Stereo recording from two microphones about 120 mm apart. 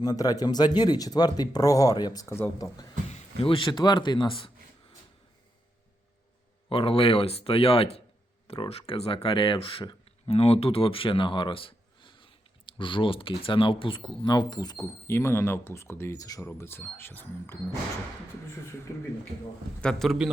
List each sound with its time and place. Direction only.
0.0 s speech: 30° left (ahead or behind)
3.1 s speech: 60° left (ahead or behind); by 4.5 s 45° left (ahead or behind)
6.7 s speech: 50° left (ahead or behind)
10.2 s a sound: 60° left (ahead or behind)
12.8 s speech: 45° left (ahead or behind); by 17.6 s 20° left (ahead or behind)
18.9 s speech: 25° left (ahead or behind)
19.8 s a man's voice: 5° left (ahead or behind)